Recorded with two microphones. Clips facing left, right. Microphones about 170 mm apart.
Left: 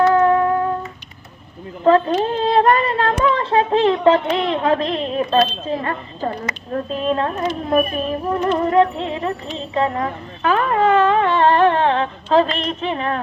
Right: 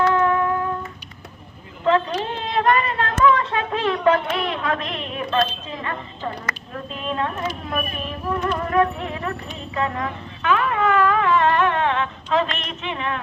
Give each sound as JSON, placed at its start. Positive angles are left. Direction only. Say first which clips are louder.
{"t": 0.1, "sound": "humming", "louder": "left 5 dB", "side_deg": 35}
{"t": 1.8, "sound": "speech", "louder": "left 6 dB", "side_deg": 40}